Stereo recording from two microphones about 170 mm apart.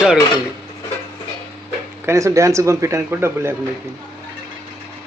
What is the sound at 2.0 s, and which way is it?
A man's voice, 15° right (ahead or behind).